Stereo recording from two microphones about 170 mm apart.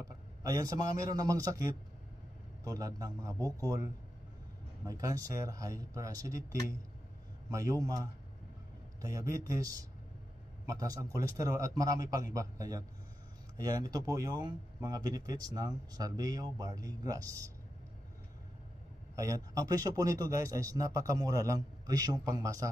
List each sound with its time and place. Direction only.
0.0 s a man's voice: 20° right (ahead or behind)
2.6 s speech: 20° right (ahead or behind)
4.8 s speech: 20° right (ahead or behind)
7.4 s speech: 20° right (ahead or behind)
9.3 s speech: 20° right (ahead or behind)
19.1 s speech: 20° right (ahead or behind)